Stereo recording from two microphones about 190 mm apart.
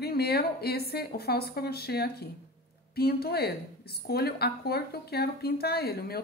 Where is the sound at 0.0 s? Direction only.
55° left (ahead or behind).